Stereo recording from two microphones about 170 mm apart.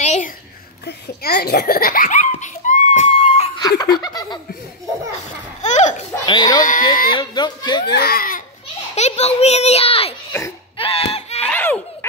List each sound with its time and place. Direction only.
0.0 s a sound: 40° left (ahead or behind)
0.8 s belly laugh: 70° left (ahead or behind); by 3.4 s 45° left (ahead or behind)
3.5 s laughter: 25° left (ahead or behind)
5.6 s baby laughter: 45° left (ahead or behind)
6.2 s speech: 25° left (ahead or behind)
6.6 s speech: 50° left (ahead or behind)
7.1 s speech: 25° left (ahead or behind)
7.9 s speech: 65° left (ahead or behind)
8.9 s a child's voice: 40° left (ahead or behind)
10.8 s a sound: 35° left (ahead or behind)
11.4 s baby laughter: 10° left (ahead or behind)